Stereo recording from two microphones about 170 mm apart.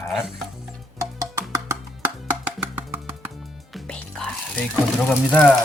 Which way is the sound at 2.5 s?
10° right (ahead or behind).